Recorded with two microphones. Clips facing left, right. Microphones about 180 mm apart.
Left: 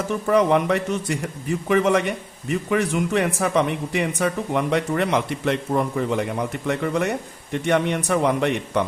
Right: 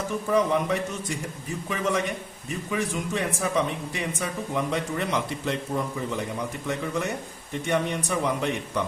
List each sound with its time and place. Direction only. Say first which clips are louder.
0.3 s a man's voice: left 5 dB; 70° left (ahead or behind)